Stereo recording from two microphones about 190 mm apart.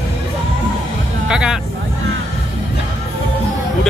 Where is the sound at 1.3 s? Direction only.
5° right (ahead or behind).